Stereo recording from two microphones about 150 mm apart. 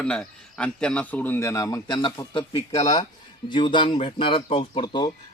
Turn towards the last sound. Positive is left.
turn(degrees=30)  # may be behind; listen again after turning